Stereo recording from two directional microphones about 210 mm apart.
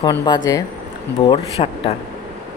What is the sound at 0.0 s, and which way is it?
Speech, 20° left (ahead or behind).